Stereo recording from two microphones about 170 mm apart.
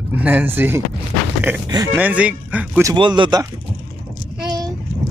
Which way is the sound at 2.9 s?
25° right (ahead or behind).